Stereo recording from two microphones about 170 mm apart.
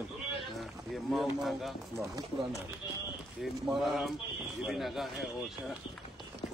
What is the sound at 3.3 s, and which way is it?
Speech, centre (ahead or behind).